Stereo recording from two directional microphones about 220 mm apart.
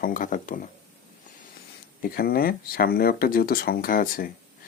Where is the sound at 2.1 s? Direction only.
45° left (ahead or behind).